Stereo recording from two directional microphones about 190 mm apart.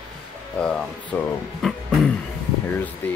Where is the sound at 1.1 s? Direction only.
10° left (ahead or behind).